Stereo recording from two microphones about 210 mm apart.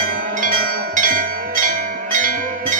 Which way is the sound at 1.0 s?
40° right (ahead or behind).